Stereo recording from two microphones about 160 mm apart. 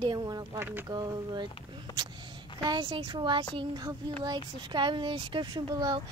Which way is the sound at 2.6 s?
30° right (ahead or behind).